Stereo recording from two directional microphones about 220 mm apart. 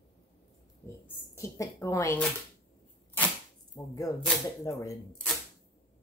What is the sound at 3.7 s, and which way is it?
Speech, 15° left (ahead or behind).